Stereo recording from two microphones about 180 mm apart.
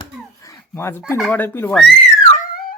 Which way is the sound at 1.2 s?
10° left (ahead or behind).